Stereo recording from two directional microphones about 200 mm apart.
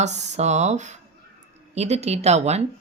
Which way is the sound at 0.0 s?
35° right (ahead or behind).